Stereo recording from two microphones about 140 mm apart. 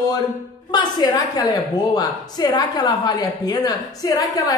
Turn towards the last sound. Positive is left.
turn(degrees=25)  # may be behind; listen again after turning